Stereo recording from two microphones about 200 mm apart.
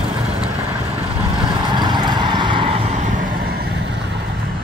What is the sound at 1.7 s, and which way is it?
Vehicle, 20° right (ahead or behind).